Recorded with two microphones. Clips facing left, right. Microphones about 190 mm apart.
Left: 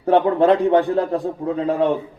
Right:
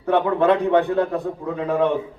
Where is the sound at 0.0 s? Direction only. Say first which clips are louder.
Left 3 dB; 35° left (ahead or behind).